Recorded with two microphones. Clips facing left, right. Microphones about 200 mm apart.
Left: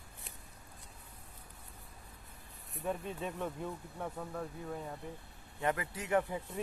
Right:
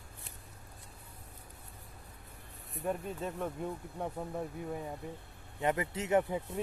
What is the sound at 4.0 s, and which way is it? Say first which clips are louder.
Speech: right 3 dB; 20° right (ahead or behind).